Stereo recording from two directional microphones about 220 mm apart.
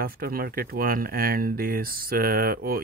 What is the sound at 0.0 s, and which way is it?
Speech, 40° right (ahead or behind).